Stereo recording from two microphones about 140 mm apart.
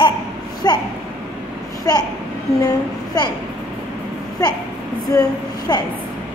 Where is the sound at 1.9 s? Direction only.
25° left (ahead or behind).